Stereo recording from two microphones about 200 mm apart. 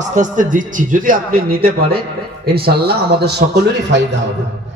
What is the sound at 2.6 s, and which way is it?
A man's voice, 55° right (ahead or behind).